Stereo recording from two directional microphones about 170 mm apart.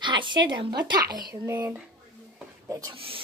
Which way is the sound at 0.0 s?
25° right (ahead or behind).